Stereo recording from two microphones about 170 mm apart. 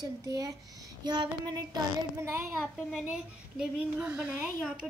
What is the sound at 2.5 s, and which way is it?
A woman's voice, centre (ahead or behind).